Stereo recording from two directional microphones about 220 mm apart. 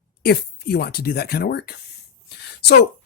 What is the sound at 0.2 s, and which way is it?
Speech, 45° left (ahead or behind).